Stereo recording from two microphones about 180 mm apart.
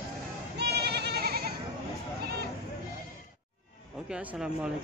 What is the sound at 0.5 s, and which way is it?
Goat, 65° right (ahead or behind).